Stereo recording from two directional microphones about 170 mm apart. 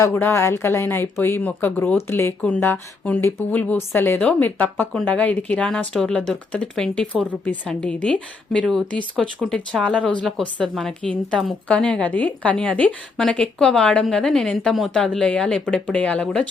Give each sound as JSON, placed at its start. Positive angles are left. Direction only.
{"t": 0.0, "sound": "speech", "side_deg": 15}